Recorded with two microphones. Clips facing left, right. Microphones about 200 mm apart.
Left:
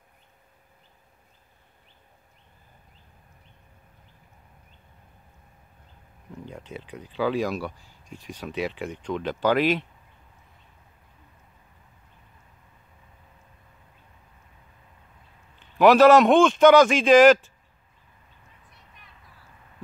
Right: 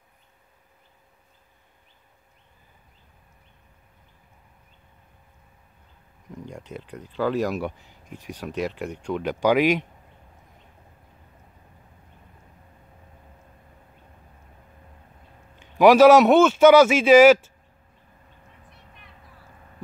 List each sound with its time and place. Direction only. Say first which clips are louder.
6.7 s speech: right 1 dB; 5° left (ahead or behind)
7.4 s a man's voice: right 2 dB; 15° right (ahead or behind)
15.8 s a man's voice: right 2 dB; 10° right (ahead or behind)